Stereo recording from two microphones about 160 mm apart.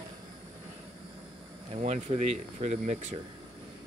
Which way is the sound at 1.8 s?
45° right (ahead or behind).